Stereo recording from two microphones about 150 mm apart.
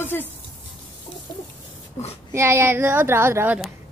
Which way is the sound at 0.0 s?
15° left (ahead or behind).